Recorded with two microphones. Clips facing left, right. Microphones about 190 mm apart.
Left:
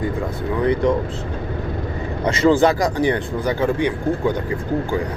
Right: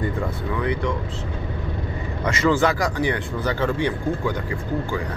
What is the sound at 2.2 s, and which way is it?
Speech, 30° left (ahead or behind).